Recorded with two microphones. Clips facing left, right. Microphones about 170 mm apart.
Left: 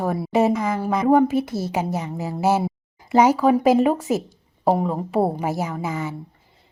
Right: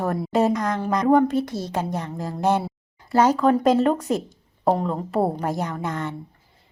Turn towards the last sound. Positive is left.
turn(degrees=5)  # may be behind; listen again after turning